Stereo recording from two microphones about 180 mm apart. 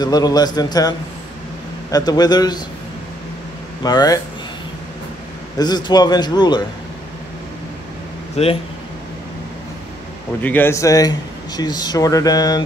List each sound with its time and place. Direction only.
0.0 s speech: 20° left (ahead or behind)
3.8 s speech: 20° left (ahead or behind)
5.6 s speech: 25° left (ahead or behind)
8.4 s speech: 35° left (ahead or behind)
10.4 s speech: 10° left (ahead or behind)